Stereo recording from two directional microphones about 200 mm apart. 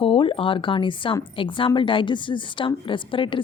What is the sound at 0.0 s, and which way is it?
A woman's voice, 25° left (ahead or behind).